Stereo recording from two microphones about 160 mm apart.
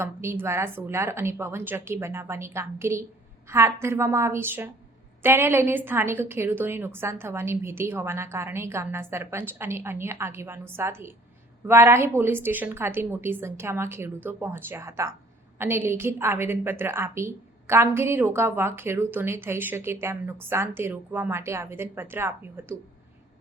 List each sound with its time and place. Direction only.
0.0 s a woman's voice: 15° right (ahead or behind)